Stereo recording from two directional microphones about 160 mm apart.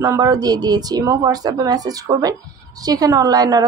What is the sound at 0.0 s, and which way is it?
Speech, 20° right (ahead or behind).